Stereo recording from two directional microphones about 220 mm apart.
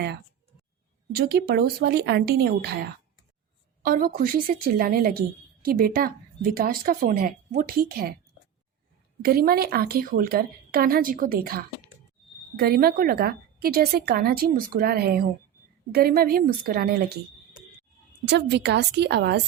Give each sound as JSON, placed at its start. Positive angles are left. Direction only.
{"t": 1.1, "sound": "a woman's voice", "side_deg": -45}
{"t": 9.2, "sound": "a woman's voice", "side_deg": -45}
{"t": 18.3, "sound": "a woman's voice", "side_deg": -50}